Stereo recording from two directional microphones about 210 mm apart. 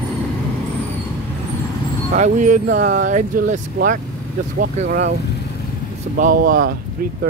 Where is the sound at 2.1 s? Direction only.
35° right (ahead or behind).